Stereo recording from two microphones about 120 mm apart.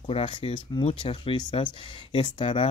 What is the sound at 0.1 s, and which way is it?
Speech, 45° left (ahead or behind).